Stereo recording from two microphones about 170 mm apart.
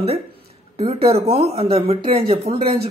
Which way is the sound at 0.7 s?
35° right (ahead or behind).